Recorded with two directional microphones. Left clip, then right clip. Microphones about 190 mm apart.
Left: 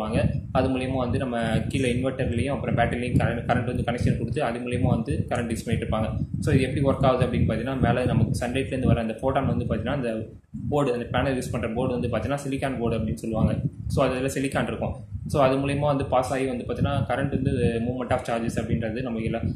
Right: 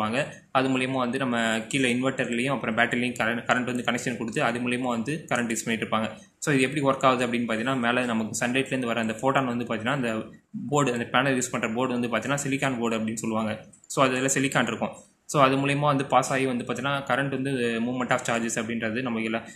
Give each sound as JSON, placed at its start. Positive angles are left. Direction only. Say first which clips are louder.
{"t": 0.0, "sound": "a man's voice", "louder": "even", "side_deg": -5}